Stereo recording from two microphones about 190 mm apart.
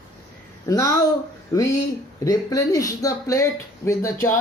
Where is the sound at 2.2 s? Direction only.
20° left (ahead or behind).